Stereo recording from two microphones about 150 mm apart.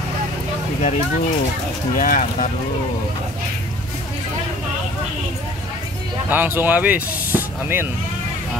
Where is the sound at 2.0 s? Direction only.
60° left (ahead or behind).